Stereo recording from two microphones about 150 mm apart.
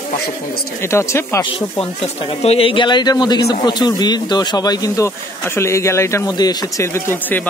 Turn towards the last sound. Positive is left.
turn(degrees=15)  # may be behind; listen again after turning